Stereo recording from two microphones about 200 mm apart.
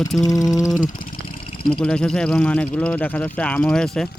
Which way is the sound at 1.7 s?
5° left (ahead or behind).